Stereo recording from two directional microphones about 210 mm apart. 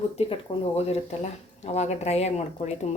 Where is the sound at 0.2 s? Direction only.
25° left (ahead or behind).